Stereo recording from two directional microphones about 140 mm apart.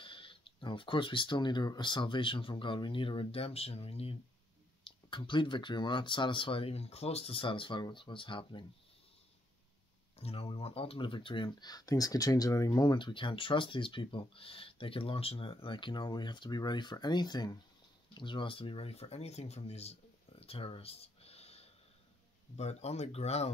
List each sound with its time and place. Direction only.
0.0 s speech: 40° left (ahead or behind)
10.1 s speech: 45° left (ahead or behind)